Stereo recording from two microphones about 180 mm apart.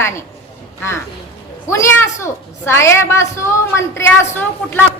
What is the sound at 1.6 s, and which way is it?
A woman's voice, 15° left (ahead or behind).